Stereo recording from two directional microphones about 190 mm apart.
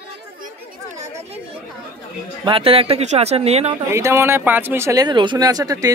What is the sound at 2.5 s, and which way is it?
Speech, 30° right (ahead or behind).